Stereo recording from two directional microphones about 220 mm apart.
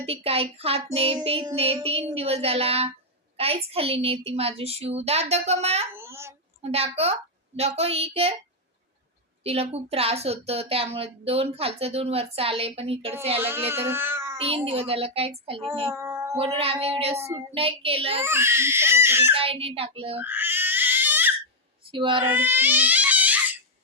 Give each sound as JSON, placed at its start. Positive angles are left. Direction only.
{"t": 0.0, "sound": "a woman's voice", "side_deg": -25}
{"t": 6.0, "sound": "a sound", "side_deg": -10}
{"t": 6.6, "sound": "a woman's voice", "side_deg": -25}
{"t": 9.4, "sound": "a woman's voice", "side_deg": -25}
{"t": 13.4, "sound": "speech", "side_deg": -10}
{"t": 14.3, "sound": "a woman's voice", "side_deg": -25}
{"t": 15.9, "sound": "a sound", "side_deg": -10}
{"t": 16.3, "sound": "a woman's voice", "side_deg": -25}
{"t": 18.2, "sound": "speech", "side_deg": -10}
{"t": 19.3, "sound": "a woman's voice", "side_deg": -25}
{"t": 20.1, "sound": "baby cry", "side_deg": -10}
{"t": 21.9, "sound": "a woman's voice", "side_deg": -20}
{"t": 22.2, "sound": "crying", "side_deg": -10}